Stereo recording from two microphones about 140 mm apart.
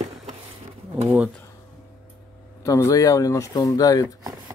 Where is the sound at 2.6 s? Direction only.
20° left (ahead or behind).